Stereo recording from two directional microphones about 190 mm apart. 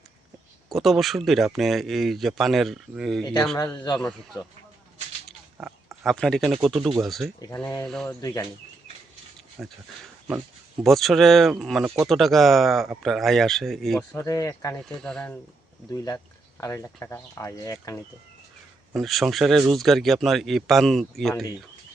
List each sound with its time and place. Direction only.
0.7 s speech: centre (ahead or behind)
3.6 s a man's voice: 20° left (ahead or behind)
5.5 s speech: 5° right (ahead or behind)
7.5 s speech: 10° left (ahead or behind)
7.9 s speech: centre (ahead or behind)
8.2 s a man's voice: 20° left (ahead or behind)
9.6 s speech: centre (ahead or behind)
14.2 s speech: 15° left (ahead or behind)
14.8 s speech: 5° left (ahead or behind)
16.0 s speech: 20° left (ahead or behind)
18.9 s speech: centre (ahead or behind)